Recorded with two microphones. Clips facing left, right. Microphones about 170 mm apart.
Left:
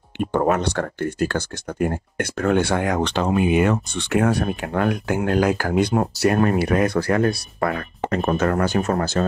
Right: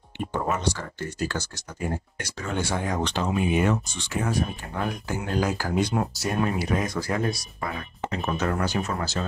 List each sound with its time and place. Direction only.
0.2 s speech: 65° left (ahead or behind)